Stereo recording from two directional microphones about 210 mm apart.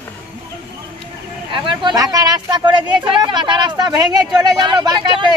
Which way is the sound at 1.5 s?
25° right (ahead or behind).